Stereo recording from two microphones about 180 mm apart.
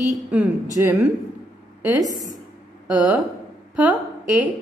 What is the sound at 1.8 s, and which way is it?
Speech, 10° right (ahead or behind).